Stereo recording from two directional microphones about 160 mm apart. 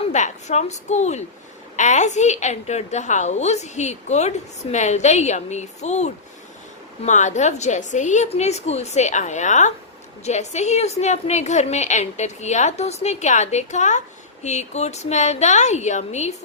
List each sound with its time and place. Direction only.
0.1 s a woman's voice: 45° left (ahead or behind)